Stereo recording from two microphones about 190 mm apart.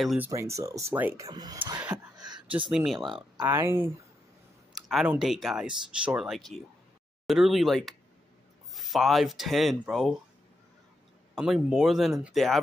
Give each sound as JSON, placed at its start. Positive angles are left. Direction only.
{"t": 0.0, "sound": "speech", "side_deg": 0}
{"t": 0.3, "sound": "speech", "side_deg": -15}
{"t": 2.1, "sound": "a sound", "side_deg": -20}
{"t": 2.7, "sound": "speech", "side_deg": 0}
{"t": 4.7, "sound": "speech", "side_deg": 0}
{"t": 11.3, "sound": "speech", "side_deg": -5}